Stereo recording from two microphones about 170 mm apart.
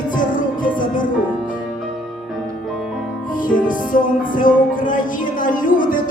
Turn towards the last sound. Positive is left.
turn(degrees=55)  # may be behind; listen again after turning